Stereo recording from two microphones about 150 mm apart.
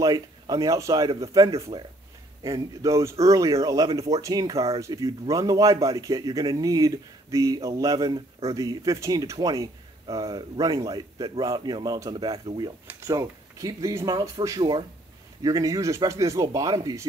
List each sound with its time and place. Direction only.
0.0 s speech: 25° right (ahead or behind)
12.8 s speech: 20° right (ahead or behind)